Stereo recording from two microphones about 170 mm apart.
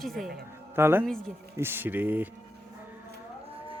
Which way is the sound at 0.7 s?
15° right (ahead or behind).